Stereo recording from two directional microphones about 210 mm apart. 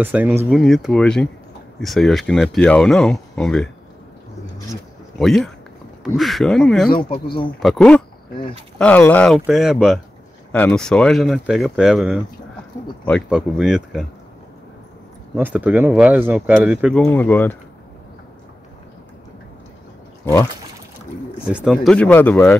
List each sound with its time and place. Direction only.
0.0 s speech: 10° right (ahead or behind)
5.2 s speech: centre (ahead or behind)
7.0 s speech: 40° left (ahead or behind)
7.6 s speech: centre (ahead or behind)
15.3 s speech: 10° right (ahead or behind); by 17.6 s 10° left (ahead or behind)
21.5 s speech: centre (ahead or behind)